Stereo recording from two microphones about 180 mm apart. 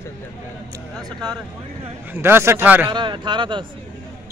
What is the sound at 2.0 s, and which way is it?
Speech, 10° right (ahead or behind).